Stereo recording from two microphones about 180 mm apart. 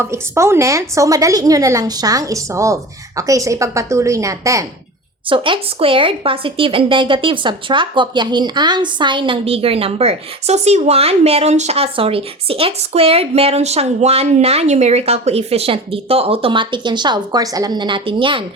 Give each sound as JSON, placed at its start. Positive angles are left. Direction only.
{"t": 0.0, "sound": "a woman's voice", "side_deg": -15}
{"t": 5.3, "sound": "speech", "side_deg": -30}